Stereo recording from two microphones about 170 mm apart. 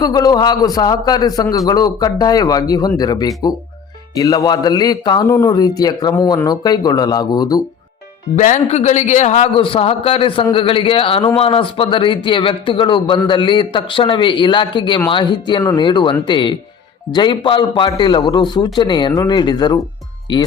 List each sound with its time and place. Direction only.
0.0 s speech: 20° left (ahead or behind)
8.4 s a man's voice: 45° left (ahead or behind); by 20.4 s 25° left (ahead or behind)